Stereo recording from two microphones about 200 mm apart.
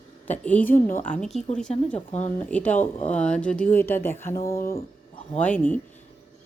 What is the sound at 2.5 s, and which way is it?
Speech, 5° left (ahead or behind).